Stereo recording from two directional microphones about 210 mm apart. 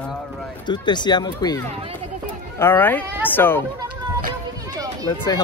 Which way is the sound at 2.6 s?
10° left (ahead or behind).